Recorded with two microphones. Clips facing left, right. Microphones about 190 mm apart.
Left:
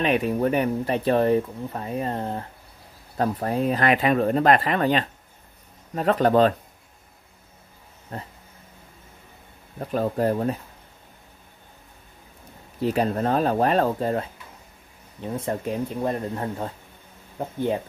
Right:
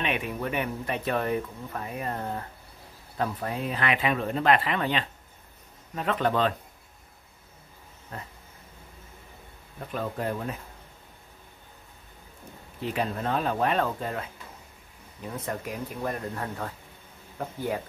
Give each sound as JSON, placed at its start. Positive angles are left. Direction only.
{"t": 0.0, "sound": "speech", "side_deg": 40}
{"t": 3.2, "sound": "speech", "side_deg": 40}
{"t": 9.8, "sound": "speech", "side_deg": 40}
{"t": 12.8, "sound": "speech", "side_deg": 40}
{"t": 15.2, "sound": "speech", "side_deg": 30}